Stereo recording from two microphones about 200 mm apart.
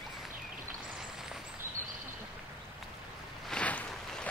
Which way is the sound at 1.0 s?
5° right (ahead or behind).